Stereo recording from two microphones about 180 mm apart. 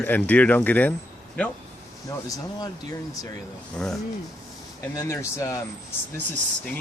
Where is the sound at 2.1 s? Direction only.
20° left (ahead or behind).